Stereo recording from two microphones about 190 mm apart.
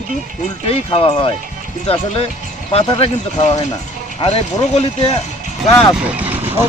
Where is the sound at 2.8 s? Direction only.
25° left (ahead or behind).